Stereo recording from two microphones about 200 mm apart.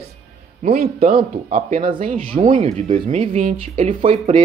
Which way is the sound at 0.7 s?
45° right (ahead or behind).